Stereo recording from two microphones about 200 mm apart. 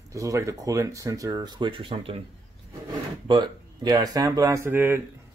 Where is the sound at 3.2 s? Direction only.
25° right (ahead or behind).